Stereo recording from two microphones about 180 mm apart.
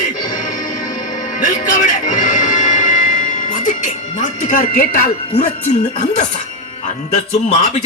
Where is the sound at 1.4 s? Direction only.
50° left (ahead or behind).